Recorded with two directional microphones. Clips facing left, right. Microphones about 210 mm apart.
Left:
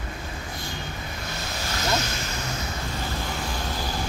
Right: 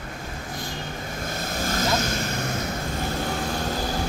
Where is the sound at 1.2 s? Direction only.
50° right (ahead or behind).